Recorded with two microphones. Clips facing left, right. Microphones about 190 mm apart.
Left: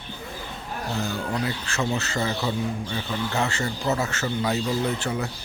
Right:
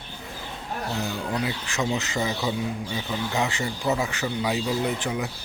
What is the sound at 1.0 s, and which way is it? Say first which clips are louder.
Speech: left 1 dB; 15° right (ahead or behind).